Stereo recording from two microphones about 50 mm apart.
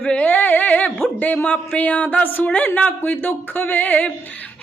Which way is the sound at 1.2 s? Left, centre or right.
Left.